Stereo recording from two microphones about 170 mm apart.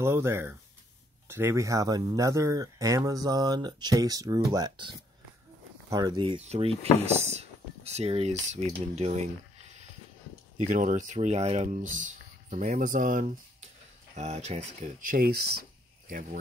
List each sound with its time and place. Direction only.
0.0 s speech: 15° right (ahead or behind); by 13.7 s 55° right (ahead or behind)
14.1 s speech: 40° right (ahead or behind); by 15.6 s 70° right (ahead or behind)
16.1 s speech: 55° right (ahead or behind)